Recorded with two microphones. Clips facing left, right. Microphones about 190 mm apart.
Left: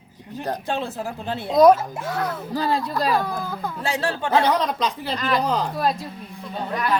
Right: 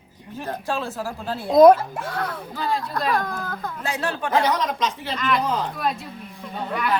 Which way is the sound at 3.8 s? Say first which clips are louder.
Left 2 dB; 30° left (ahead or behind).